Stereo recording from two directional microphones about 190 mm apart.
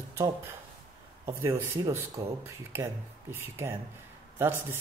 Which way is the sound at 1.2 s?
15° right (ahead or behind).